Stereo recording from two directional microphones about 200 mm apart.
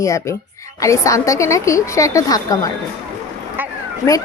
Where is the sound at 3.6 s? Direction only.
10° right (ahead or behind).